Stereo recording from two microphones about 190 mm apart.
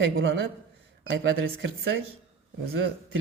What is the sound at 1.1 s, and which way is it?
Speech, 75° right (ahead or behind).